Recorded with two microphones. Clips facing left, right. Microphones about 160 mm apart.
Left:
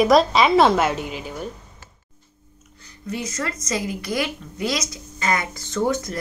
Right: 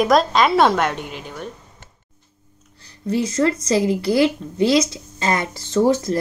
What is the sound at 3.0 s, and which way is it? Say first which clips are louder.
A woman's voice: right 9 dB; 30° right (ahead or behind).